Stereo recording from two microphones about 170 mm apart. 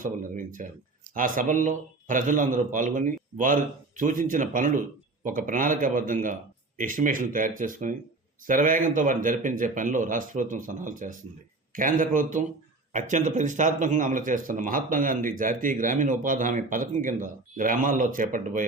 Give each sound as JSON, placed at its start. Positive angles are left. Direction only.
{"t": 0.0, "sound": "speech", "side_deg": -50}